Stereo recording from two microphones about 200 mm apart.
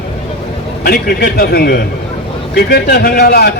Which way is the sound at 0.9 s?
50° left (ahead or behind).